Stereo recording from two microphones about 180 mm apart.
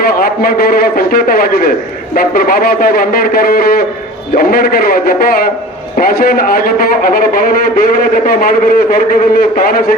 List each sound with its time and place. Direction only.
0.0 s a man's voice: 55° left (ahead or behind)